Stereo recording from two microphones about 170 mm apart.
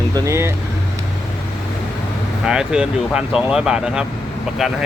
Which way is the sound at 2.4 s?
5° right (ahead or behind).